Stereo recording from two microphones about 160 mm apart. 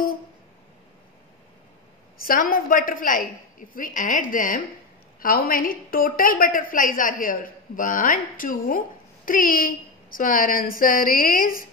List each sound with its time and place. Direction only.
2.2 s a woman's voice: 65° left (ahead or behind)